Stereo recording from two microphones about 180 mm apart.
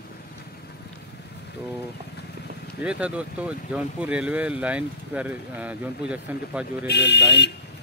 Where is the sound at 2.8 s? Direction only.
5° right (ahead or behind).